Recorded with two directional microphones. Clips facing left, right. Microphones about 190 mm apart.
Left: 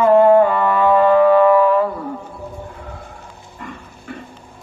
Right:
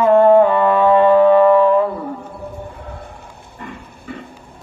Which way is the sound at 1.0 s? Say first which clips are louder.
Right 1 dB; 25° right (ahead or behind).